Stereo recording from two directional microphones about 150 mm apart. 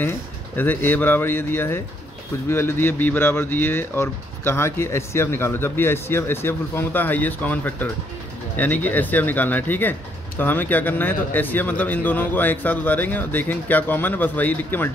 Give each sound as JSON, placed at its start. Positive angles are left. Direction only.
{"t": 0.6, "sound": "speech", "side_deg": 10}